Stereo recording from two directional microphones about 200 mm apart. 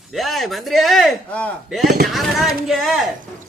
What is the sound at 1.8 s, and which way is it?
Speech, 45° right (ahead or behind).